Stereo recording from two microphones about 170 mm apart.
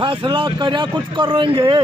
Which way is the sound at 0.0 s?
30° right (ahead or behind).